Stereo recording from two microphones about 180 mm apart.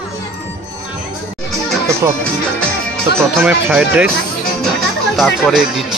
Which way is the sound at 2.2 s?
5° left (ahead or behind).